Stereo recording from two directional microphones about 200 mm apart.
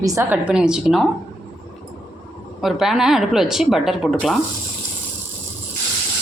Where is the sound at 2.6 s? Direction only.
Centre (ahead or behind).